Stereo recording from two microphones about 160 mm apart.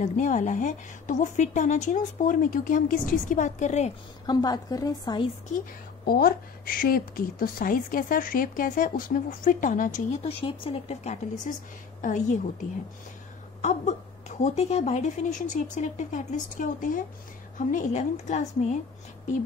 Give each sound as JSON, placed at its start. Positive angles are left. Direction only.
{"t": 0.0, "sound": "a woman's voice", "side_deg": 50}
{"t": 4.3, "sound": "a woman's voice", "side_deg": 25}
{"t": 6.0, "sound": "a woman's voice", "side_deg": 70}
{"t": 10.4, "sound": "a woman's voice", "side_deg": 35}